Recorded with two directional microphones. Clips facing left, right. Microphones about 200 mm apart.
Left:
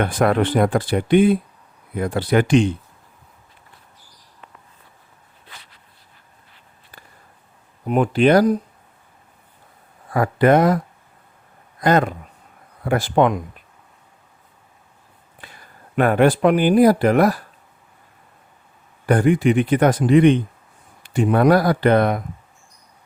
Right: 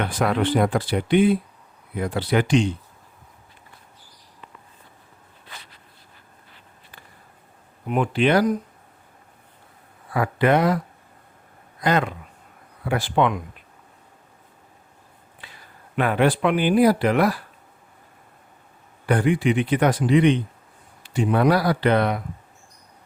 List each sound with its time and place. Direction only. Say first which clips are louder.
0.0 s speech: left 4 dB; 50° left (ahead or behind)
7.9 s speech: left 5 dB; 45° left (ahead or behind)
10.1 s speech: left 4 dB; 45° left (ahead or behind)
15.4 s speech: left 3 dB; 50° left (ahead or behind)
19.0 s speech: left 4 dB; 45° left (ahead or behind)